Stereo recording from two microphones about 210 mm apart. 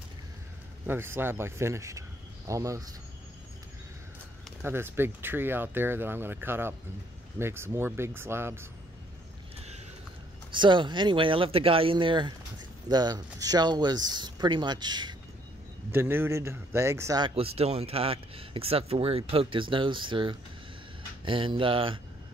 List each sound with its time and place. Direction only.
0.8 s speech: 10° right (ahead or behind)
4.5 s speech: 10° right (ahead or behind)
10.5 s speech: 20° right (ahead or behind)
17.4 s speech: 30° right (ahead or behind)